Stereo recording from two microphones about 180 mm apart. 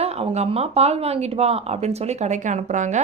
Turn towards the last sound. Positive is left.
turn(degrees=-40)  # may be behind; listen again after turning